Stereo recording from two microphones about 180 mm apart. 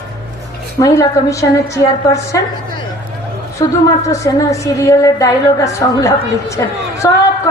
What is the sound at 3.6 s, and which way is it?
A woman's voice, 20° left (ahead or behind).